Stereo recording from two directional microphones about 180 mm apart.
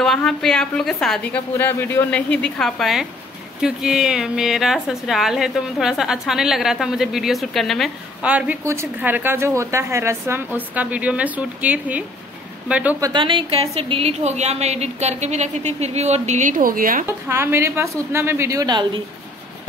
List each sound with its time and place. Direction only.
0.0 s a woman's voice: centre (ahead or behind)
13.0 s a woman's voice: 25° right (ahead or behind); by 17.0 s 50° right (ahead or behind)
17.3 s a woman's voice: 15° right (ahead or behind)